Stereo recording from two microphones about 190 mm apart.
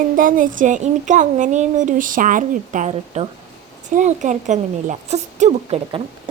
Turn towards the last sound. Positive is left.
turn(degrees=-35)  # may be behind; listen again after turning